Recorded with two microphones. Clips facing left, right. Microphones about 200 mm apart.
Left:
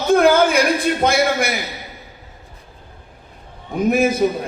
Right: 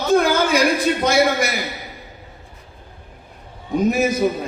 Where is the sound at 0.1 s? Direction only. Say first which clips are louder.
Left 3 dB; 55° left (ahead or behind).